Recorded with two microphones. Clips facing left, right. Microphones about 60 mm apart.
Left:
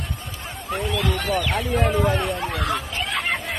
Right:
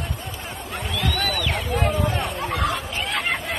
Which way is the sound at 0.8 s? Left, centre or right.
Centre.